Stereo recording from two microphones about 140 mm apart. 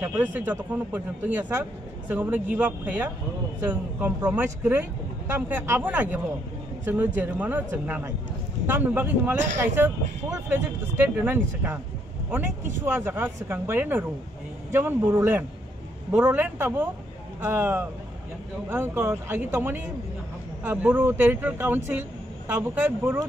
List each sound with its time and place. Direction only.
0.0 s a man's voice: 15° right (ahead or behind)
12.8 s a man's voice: 15° right (ahead or behind)